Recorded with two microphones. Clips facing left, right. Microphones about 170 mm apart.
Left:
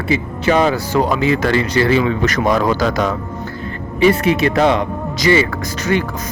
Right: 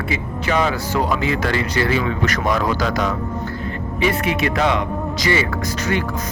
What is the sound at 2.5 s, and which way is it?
Speech, 35° left (ahead or behind).